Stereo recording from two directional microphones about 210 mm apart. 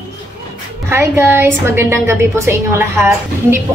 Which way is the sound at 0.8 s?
10° right (ahead or behind).